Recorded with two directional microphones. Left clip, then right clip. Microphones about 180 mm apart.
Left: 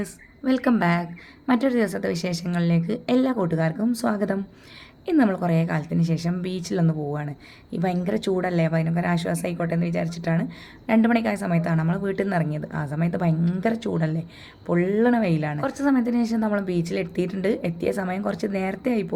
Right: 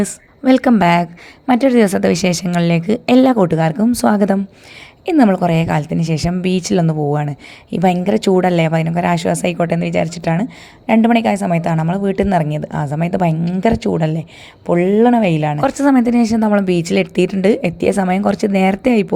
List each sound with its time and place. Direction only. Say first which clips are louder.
0.0 s a woman's voice: right 11 dB; 40° right (ahead or behind)